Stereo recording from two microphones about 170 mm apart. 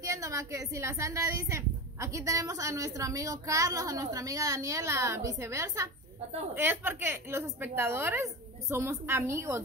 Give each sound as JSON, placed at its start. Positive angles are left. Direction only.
{"t": 0.0, "sound": "a woman's voice", "side_deg": -20}